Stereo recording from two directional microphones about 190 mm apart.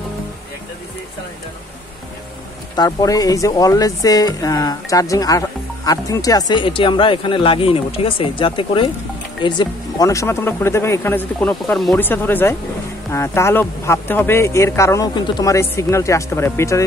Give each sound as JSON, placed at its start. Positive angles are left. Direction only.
{"t": 2.7, "sound": "speech", "side_deg": 20}